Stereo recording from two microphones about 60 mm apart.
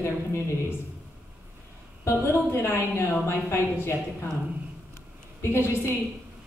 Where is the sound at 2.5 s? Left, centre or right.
Left.